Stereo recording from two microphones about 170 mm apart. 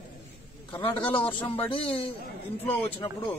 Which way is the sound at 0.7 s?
30° left (ahead or behind).